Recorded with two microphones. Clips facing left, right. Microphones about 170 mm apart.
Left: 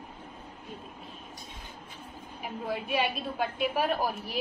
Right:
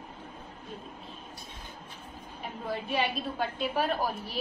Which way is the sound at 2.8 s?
10° left (ahead or behind).